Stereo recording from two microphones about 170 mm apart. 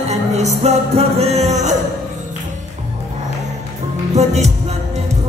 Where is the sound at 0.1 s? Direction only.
40° right (ahead or behind).